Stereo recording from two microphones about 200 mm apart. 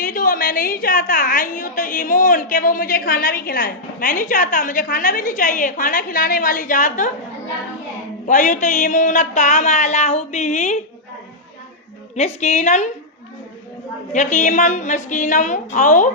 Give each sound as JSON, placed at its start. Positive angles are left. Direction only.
{"t": 0.0, "sound": "a woman's voice", "side_deg": 45}
{"t": 8.3, "sound": "speech", "side_deg": 40}
{"t": 12.1, "sound": "speech", "side_deg": 35}
{"t": 14.1, "sound": "speech", "side_deg": 35}